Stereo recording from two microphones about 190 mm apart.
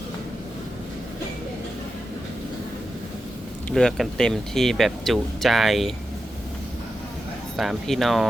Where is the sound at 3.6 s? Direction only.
5° left (ahead or behind).